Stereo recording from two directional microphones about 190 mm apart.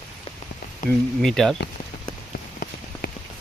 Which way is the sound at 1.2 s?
Centre (ahead or behind).